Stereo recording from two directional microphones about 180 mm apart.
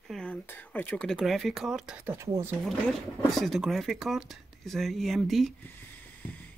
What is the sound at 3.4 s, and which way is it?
Speech, centre (ahead or behind).